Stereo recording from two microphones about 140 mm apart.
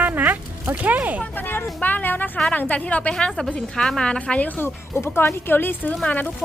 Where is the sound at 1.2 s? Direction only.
15° left (ahead or behind).